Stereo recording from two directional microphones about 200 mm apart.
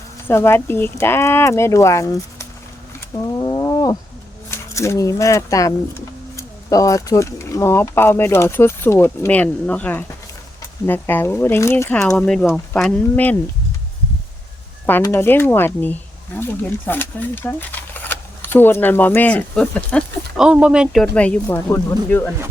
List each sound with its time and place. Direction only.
0.3 s speech: 10° left (ahead or behind)
3.3 s a sound: 20° left (ahead or behind)
4.5 s speech: 15° left (ahead or behind)
14.8 s speech: 10° left (ahead or behind)